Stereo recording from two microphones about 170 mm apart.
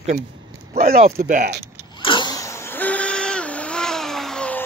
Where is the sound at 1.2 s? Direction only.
50° right (ahead or behind).